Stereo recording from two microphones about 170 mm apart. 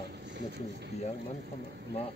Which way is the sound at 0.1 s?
90° right.